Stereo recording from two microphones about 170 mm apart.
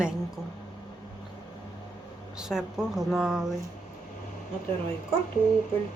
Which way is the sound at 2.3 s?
5° right (ahead or behind).